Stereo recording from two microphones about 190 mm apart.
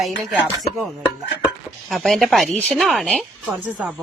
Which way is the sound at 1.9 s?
Centre (ahead or behind).